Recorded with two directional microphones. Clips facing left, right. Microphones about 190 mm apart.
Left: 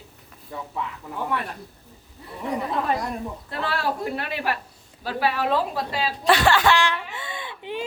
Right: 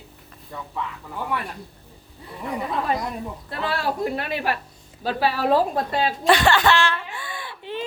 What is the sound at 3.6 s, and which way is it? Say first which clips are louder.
Speech: right 2 dB; 20° right (ahead or behind).